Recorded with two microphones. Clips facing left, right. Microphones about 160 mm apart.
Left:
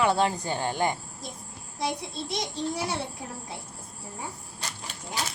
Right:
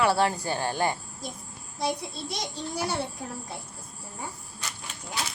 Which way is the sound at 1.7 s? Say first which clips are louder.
Right 1 dB; centre (ahead or behind).